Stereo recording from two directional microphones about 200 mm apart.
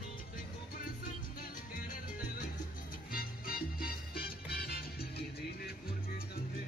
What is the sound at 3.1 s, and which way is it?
Music, 45° left (ahead or behind).